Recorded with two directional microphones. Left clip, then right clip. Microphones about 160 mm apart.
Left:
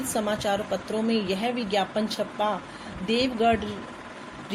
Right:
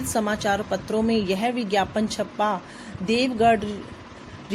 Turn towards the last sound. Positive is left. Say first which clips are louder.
# right 4 dB
turn(degrees=-50)  # may be behind; listen again after turning